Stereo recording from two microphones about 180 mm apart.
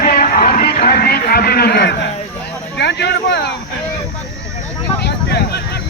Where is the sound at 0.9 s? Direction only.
60° left (ahead or behind).